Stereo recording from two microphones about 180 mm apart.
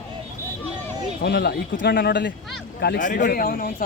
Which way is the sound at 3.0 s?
45° left (ahead or behind).